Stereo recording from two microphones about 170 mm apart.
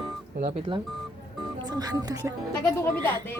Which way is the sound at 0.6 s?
30° right (ahead or behind).